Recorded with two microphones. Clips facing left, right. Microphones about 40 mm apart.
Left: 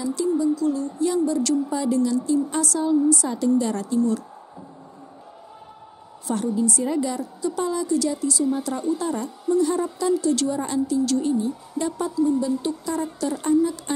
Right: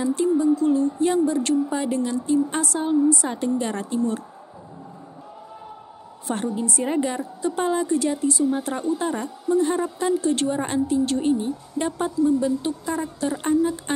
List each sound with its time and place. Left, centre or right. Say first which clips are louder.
0.0 s speech: right 2 dB; right
6.2 s speech: left 2 dB; right